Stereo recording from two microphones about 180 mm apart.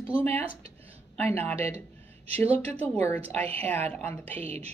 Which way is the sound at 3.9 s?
10° left (ahead or behind).